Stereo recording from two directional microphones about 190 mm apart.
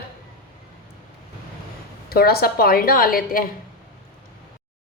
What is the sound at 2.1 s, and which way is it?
A woman's voice, 55° left (ahead or behind).